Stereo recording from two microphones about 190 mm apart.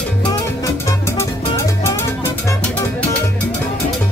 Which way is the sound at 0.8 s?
15° left (ahead or behind).